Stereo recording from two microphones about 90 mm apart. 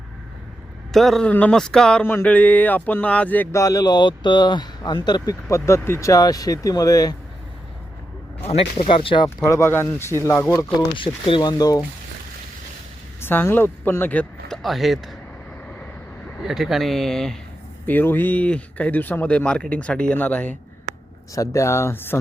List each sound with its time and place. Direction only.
0.9 s speech: 5° left (ahead or behind)
1.3 s speech: 15° left (ahead or behind)
3.5 s speech: 40° left (ahead or behind)
6.1 s speech: 45° left (ahead or behind)
8.4 s speech: 90° left; by 9.3 s 70° left (ahead or behind)
9.4 s speech: 35° left (ahead or behind)
10.8 s speech: 70° left (ahead or behind)
11.4 s speech: 45° left (ahead or behind)
13.2 s speech: 25° left (ahead or behind)
14.5 s speech: centre (ahead or behind)
16.4 s speech: 5° right (ahead or behind)
17.8 s speech: 20° left (ahead or behind)
21.3 s speech: 35° left (ahead or behind)